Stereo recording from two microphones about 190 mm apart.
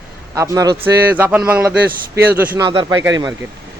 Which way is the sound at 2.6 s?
25° right (ahead or behind).